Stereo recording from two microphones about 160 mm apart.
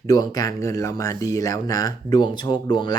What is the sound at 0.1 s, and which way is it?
Speech, 20° left (ahead or behind).